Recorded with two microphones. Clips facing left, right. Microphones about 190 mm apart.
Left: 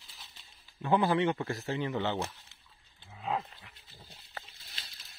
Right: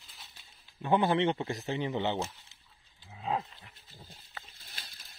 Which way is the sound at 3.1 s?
30° right (ahead or behind).